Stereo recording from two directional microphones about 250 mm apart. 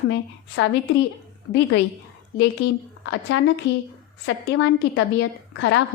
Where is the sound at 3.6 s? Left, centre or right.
Left.